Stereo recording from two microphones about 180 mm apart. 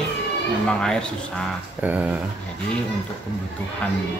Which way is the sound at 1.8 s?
10° right (ahead or behind).